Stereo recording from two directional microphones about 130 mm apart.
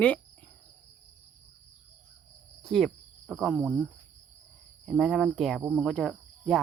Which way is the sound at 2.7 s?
Centre (ahead or behind).